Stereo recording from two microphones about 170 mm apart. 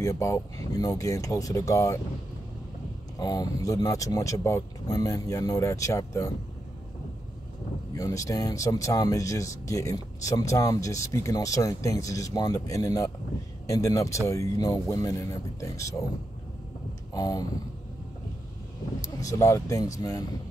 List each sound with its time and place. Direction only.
0.0 s speech: 20° left (ahead or behind)
3.2 s speech: 20° left (ahead or behind)
7.9 s speech: 20° left (ahead or behind)
17.1 s speech: 20° left (ahead or behind)
19.1 s speech: 20° left (ahead or behind)